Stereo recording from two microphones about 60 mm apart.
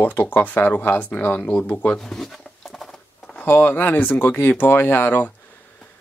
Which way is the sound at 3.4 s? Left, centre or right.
Left.